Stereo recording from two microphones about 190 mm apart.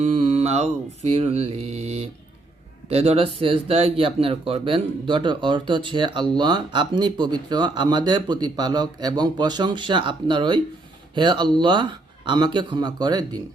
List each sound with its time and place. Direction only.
0.0 s music: 35° right (ahead or behind)
2.9 s speech: 30° right (ahead or behind)